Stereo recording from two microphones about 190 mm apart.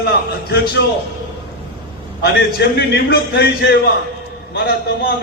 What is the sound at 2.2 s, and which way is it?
A man's voice, 60° left (ahead or behind).